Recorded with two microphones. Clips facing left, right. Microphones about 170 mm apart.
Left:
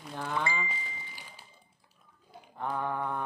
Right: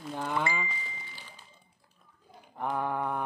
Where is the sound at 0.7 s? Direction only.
10° left (ahead or behind).